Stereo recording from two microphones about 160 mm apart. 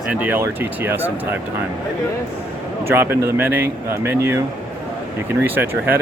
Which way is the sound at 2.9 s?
15° right (ahead or behind).